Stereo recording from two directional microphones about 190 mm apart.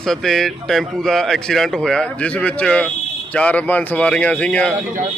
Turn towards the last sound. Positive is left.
turn(degrees=5)  # may be behind; listen again after turning